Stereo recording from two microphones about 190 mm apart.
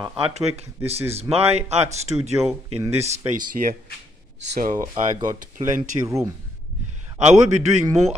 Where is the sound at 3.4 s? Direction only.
45° right (ahead or behind).